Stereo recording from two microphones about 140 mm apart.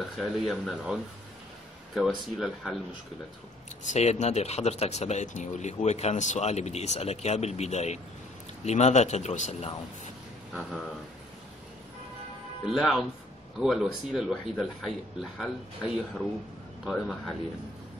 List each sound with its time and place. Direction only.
0.2 s speech: centre (ahead or behind)
2.0 s speech: centre (ahead or behind)
3.8 s speech: 55° left (ahead or behind)
10.5 s speech: centre (ahead or behind)
12.6 s speech: 5° right (ahead or behind)